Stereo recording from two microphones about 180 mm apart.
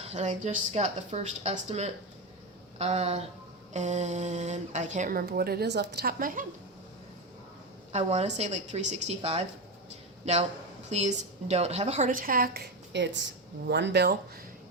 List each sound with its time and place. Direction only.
0.0 s speech: 35° right (ahead or behind)
7.9 s a woman's voice: 40° right (ahead or behind); by 14.2 s 65° right (ahead or behind)